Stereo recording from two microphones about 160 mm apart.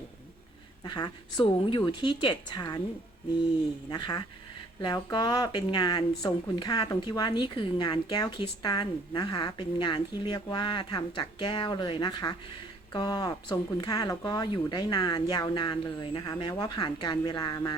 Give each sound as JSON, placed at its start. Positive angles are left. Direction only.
{"t": 0.9, "sound": "speech", "side_deg": 25}
{"t": 3.8, "sound": "speech", "side_deg": 30}